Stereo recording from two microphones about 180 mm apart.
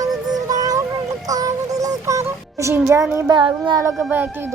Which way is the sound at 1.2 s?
20° right (ahead or behind).